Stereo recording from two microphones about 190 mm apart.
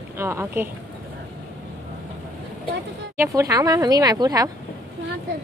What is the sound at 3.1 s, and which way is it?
Speech, 15° right (ahead or behind).